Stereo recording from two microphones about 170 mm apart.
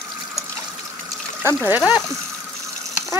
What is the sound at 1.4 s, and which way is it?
Speech, 10° right (ahead or behind).